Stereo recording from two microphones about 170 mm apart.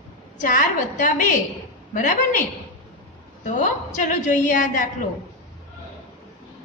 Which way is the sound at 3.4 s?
45° left (ahead or behind).